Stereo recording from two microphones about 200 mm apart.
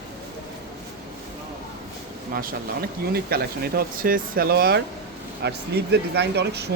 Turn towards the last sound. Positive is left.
turn(degrees=-55)  # may be behind; listen again after turning